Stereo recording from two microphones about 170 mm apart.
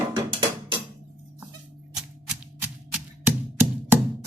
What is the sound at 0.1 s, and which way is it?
Music, 25° right (ahead or behind).